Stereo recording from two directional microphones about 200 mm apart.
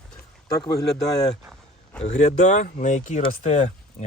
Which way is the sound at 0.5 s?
20° left (ahead or behind).